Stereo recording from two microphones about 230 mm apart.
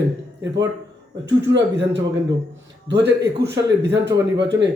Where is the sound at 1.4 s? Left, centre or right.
Right.